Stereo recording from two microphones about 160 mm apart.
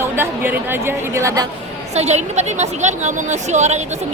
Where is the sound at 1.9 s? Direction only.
45° right (ahead or behind).